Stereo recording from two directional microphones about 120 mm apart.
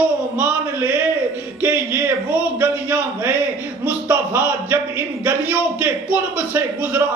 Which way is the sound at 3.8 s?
15° right (ahead or behind).